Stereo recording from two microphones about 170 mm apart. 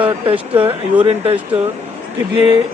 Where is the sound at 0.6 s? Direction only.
30° right (ahead or behind).